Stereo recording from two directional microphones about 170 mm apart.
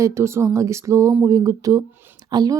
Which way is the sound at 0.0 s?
15° right (ahead or behind).